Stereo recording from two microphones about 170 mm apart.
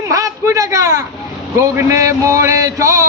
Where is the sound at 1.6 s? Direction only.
15° right (ahead or behind).